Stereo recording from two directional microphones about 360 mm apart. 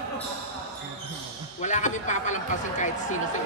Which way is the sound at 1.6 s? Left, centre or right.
Centre.